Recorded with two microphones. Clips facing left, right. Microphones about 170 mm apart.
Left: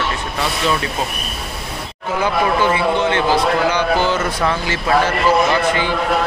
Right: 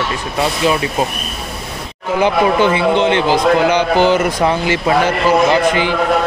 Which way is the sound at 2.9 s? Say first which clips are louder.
Right 3 dB; 20° right (ahead or behind).